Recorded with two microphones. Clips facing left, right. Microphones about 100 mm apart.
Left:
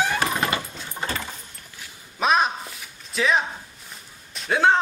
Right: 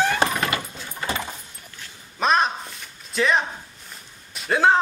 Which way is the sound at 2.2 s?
5° left (ahead or behind).